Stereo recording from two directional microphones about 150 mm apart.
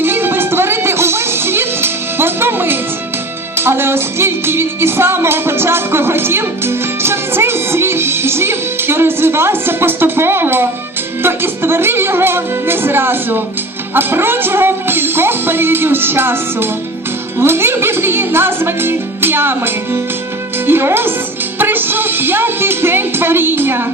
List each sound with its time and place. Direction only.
0.0 s music: 15° right (ahead or behind)